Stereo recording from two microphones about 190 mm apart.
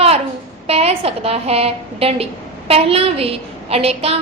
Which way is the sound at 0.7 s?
30° right (ahead or behind).